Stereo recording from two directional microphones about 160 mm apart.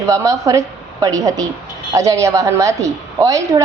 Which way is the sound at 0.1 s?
20° right (ahead or behind).